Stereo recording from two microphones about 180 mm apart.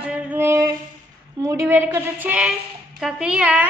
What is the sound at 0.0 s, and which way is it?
Singing, 5° right (ahead or behind).